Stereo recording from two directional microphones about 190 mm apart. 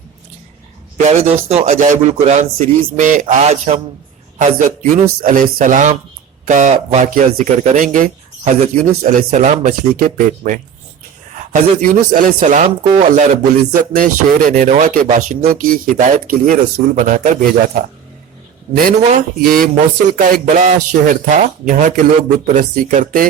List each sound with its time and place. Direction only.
0.9 s a man's voice: 35° right (ahead or behind)
13.9 s speech: 45° right (ahead or behind)
18.8 s speech: 45° right (ahead or behind)